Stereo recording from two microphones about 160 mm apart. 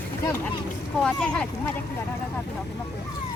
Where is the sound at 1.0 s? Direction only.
5° left (ahead or behind).